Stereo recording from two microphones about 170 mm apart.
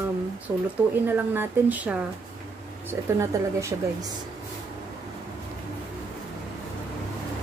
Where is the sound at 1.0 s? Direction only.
10° right (ahead or behind).